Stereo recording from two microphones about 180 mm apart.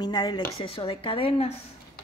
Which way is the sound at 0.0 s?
25° left (ahead or behind).